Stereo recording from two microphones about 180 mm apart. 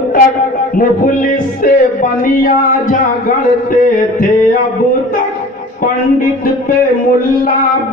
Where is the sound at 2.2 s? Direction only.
50° left (ahead or behind).